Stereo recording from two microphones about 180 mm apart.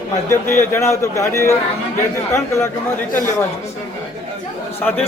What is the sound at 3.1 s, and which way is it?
Speech, 45° left (ahead or behind).